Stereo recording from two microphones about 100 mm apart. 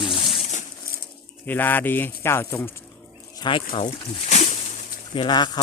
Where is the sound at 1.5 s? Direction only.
20° left (ahead or behind).